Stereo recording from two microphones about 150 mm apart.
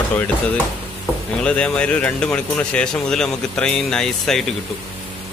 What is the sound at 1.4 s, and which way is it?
Speech, 5° left (ahead or behind).